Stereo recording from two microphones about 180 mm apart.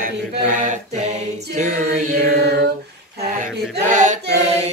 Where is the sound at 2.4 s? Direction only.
65° right (ahead or behind).